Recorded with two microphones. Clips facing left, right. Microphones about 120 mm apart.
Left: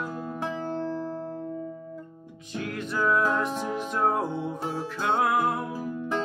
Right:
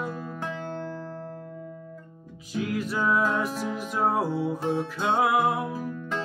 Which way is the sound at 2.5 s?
5° right (ahead or behind).